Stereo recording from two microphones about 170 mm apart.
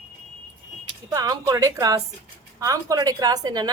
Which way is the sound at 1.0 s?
20° right (ahead or behind).